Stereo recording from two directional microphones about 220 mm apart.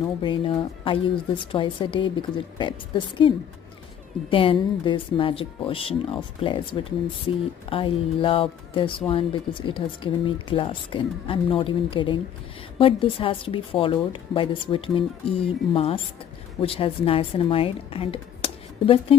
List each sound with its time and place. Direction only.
0.2 s speech: 25° left (ahead or behind)